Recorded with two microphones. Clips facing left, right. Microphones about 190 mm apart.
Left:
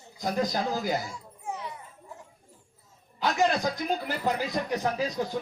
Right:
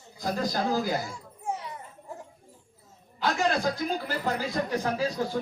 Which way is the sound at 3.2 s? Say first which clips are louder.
Left 1 dB; 20° left (ahead or behind).